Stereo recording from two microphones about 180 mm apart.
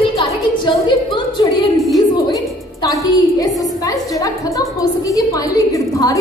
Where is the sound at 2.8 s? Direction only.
20° left (ahead or behind).